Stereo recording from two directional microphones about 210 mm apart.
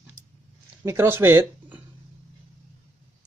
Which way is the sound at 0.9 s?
10° right (ahead or behind).